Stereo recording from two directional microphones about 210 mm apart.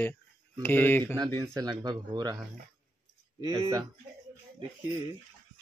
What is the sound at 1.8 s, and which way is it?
Speech, 20° right (ahead or behind).